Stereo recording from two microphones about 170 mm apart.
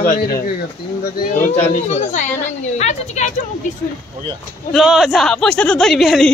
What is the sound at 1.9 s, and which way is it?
Speech, 45° left (ahead or behind).